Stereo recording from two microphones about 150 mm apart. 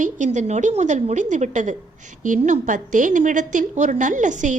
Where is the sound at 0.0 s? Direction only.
55° right (ahead or behind).